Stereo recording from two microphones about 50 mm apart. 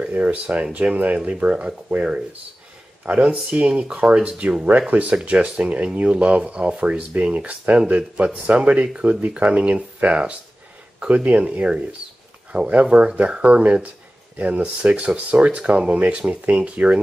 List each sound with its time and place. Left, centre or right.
0.1 s speech: right